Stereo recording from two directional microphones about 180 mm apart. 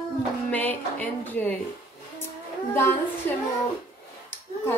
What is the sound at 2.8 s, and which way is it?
Speech, 15° left (ahead or behind).